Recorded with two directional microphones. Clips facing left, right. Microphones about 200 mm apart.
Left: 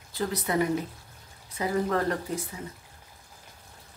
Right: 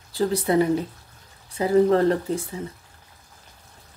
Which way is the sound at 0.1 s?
30° right (ahead or behind).